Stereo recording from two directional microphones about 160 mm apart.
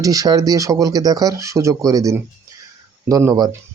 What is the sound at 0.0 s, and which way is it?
Speech, 20° right (ahead or behind).